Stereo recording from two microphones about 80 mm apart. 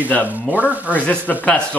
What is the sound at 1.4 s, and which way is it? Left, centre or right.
Speech, centre.